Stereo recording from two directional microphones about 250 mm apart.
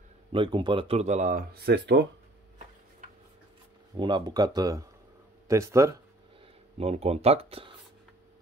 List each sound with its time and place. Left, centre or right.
0.3 s speech: centre; by 2.0 s right
3.9 s speech: centre
6.8 s speech: right